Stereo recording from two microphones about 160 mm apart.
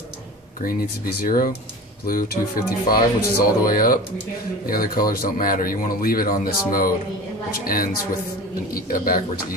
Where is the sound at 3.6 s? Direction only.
65° left (ahead or behind).